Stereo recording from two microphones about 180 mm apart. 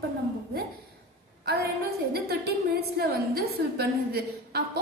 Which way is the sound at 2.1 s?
60° right (ahead or behind).